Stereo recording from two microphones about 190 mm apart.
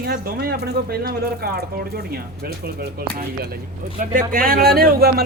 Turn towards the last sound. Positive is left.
turn(degrees=-55)  # may be behind; listen again after turning